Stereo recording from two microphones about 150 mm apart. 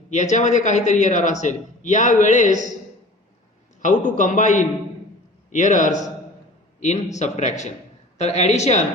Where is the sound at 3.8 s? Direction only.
55° left (ahead or behind).